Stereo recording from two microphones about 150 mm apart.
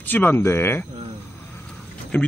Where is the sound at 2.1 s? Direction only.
10° left (ahead or behind).